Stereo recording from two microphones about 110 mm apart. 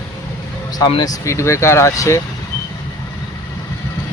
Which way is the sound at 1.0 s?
30° left (ahead or behind).